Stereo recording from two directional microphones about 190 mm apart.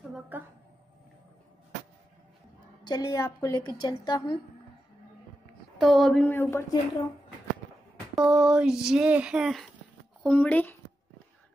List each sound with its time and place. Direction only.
0.3 s a woman's voice: 10° right (ahead or behind)
2.8 s speech: 20° left (ahead or behind)
5.8 s a woman's voice: centre (ahead or behind)
8.2 s a woman's voice: 5° right (ahead or behind)